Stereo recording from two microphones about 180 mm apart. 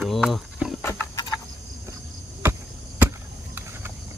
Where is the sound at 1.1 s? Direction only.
20° left (ahead or behind).